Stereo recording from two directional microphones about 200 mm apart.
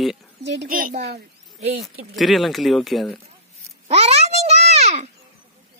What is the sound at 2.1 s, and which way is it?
Speech, centre (ahead or behind).